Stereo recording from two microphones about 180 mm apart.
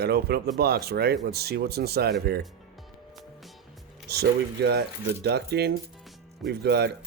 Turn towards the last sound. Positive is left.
turn(degrees=-65)  # may be behind; listen again after turning